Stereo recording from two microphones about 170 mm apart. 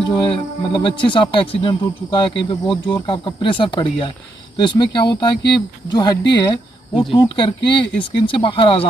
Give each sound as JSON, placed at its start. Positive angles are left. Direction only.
{"t": 0.2, "sound": "speech", "side_deg": 30}